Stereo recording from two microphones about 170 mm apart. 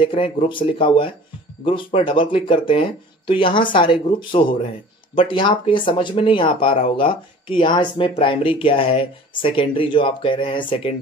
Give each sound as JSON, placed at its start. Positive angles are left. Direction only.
{"t": 0.0, "sound": "speech", "side_deg": 30}